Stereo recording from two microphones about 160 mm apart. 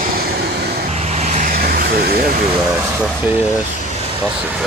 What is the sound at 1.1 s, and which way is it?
Vehicle, 45° right (ahead or behind).